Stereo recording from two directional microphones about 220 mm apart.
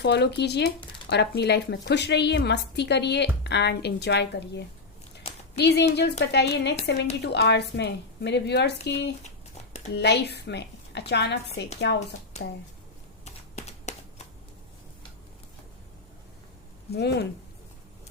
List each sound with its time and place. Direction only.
0.0 s a woman's voice: 50° left (ahead or behind)
12.4 s speech: 30° left (ahead or behind)
13.2 s typing: 30° left (ahead or behind)
16.9 s a woman's voice: 50° left (ahead or behind)